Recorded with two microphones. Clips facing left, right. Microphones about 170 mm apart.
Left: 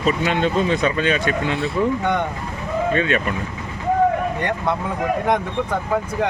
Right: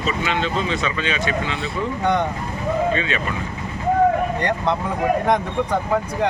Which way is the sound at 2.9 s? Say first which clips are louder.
Left 3 dB; 50° left (ahead or behind).